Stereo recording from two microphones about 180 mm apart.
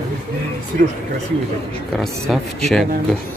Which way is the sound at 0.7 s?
55° right (ahead or behind).